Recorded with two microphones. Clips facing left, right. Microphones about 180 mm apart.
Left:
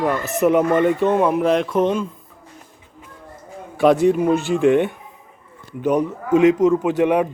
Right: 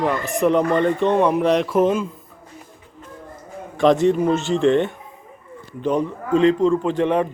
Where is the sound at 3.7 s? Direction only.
5° left (ahead or behind).